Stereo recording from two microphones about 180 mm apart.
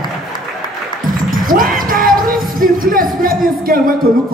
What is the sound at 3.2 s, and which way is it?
Speech, 55° right (ahead or behind).